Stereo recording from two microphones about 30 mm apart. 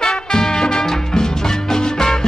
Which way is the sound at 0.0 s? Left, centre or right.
Left.